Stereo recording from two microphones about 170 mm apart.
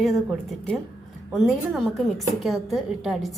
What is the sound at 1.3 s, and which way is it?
A woman's voice, centre (ahead or behind).